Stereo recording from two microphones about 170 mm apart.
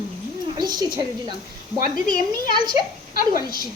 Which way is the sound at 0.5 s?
25° right (ahead or behind).